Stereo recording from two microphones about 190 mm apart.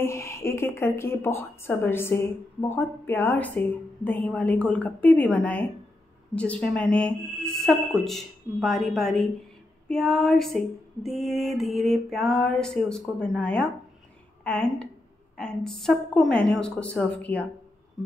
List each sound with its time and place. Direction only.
0.0 s a woman's voice: 15° left (ahead or behind)